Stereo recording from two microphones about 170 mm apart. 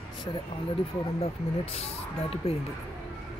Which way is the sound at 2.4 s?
35° left (ahead or behind).